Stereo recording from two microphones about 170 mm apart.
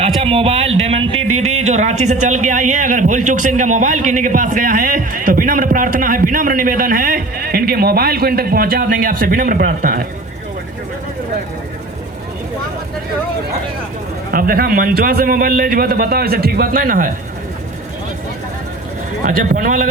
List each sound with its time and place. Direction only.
0.2 s speech: 35° right (ahead or behind); by 10.1 s 60° right (ahead or behind)
14.3 s a man's voice: 60° right (ahead or behind)
19.2 s speech: 50° right (ahead or behind)